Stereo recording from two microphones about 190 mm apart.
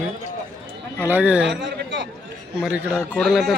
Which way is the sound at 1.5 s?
70° right (ahead or behind).